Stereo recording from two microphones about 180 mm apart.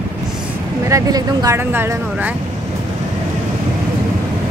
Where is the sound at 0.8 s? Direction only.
20° right (ahead or behind).